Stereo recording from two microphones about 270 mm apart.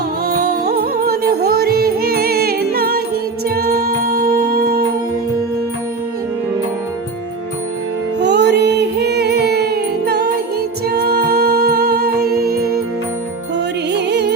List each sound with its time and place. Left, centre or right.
0.3 s music: right
8.2 s music: right
13.9 s music: right